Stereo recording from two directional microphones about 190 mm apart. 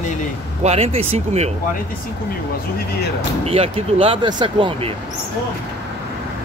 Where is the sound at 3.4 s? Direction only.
30° right (ahead or behind).